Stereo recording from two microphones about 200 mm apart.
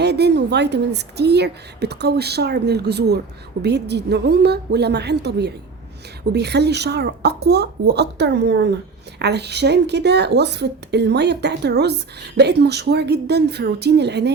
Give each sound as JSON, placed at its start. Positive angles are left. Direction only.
{"t": 0.0, "sound": "speech", "side_deg": -55}